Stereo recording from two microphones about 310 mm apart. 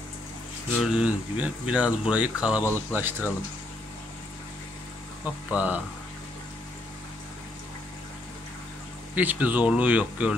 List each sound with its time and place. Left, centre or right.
0.9 s speech: centre
5.2 s speech: centre
9.1 s speech: centre